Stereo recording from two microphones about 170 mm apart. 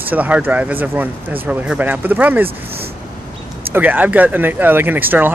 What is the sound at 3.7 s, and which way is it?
Speech, 10° right (ahead or behind).